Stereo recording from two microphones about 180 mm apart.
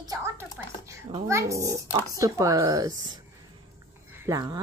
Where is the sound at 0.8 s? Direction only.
15° right (ahead or behind).